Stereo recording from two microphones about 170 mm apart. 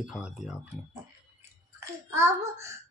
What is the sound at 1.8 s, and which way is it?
Speech, 15° right (ahead or behind).